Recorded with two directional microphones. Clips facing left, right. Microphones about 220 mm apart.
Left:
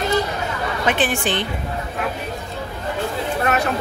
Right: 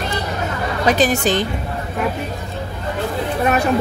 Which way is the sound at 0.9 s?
40° right (ahead or behind).